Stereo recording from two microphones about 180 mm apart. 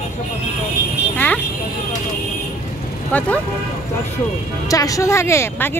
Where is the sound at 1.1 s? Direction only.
10° left (ahead or behind).